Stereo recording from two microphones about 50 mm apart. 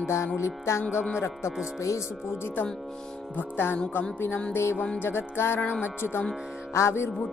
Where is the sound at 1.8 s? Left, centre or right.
Left.